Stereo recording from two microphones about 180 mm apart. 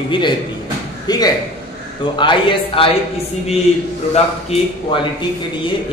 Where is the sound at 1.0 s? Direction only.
20° left (ahead or behind).